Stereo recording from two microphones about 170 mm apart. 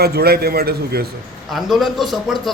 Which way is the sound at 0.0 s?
65° right (ahead or behind).